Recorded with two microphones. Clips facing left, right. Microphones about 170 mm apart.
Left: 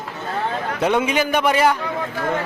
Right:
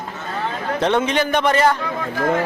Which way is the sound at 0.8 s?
10° left (ahead or behind).